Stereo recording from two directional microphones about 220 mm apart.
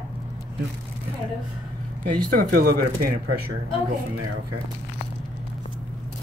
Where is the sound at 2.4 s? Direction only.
40° right (ahead or behind).